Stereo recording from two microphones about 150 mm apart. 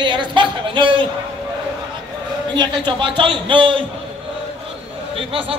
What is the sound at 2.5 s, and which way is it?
A man's voice, 30° right (ahead or behind).